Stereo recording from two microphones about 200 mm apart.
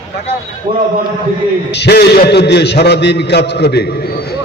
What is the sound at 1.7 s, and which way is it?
A man's voice, 55° left (ahead or behind).